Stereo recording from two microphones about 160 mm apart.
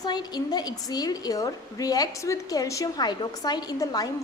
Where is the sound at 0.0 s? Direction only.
25° left (ahead or behind).